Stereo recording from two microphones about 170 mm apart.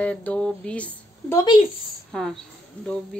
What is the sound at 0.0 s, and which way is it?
Speech, 10° left (ahead or behind).